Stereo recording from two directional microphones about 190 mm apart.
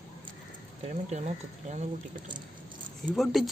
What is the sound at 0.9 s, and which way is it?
Speech, 35° right (ahead or behind).